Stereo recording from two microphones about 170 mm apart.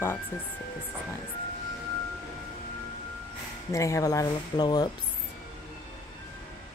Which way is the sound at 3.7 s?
20° left (ahead or behind).